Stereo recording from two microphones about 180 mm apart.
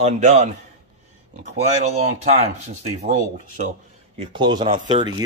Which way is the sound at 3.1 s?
45° right (ahead or behind).